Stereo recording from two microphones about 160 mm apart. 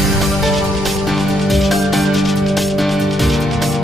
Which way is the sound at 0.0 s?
Centre (ahead or behind).